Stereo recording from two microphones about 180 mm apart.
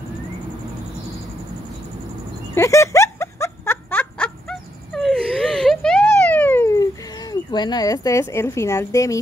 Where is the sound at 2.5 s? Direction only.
15° left (ahead or behind).